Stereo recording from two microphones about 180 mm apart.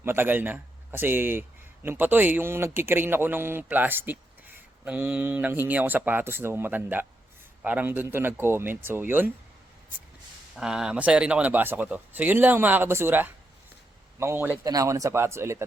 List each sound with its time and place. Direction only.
0.0 s a man's voice: 10° right (ahead or behind)
10.5 s a man's voice: 5° right (ahead or behind)